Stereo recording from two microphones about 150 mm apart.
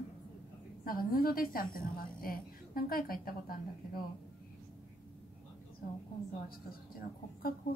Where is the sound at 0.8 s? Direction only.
75° left (ahead or behind).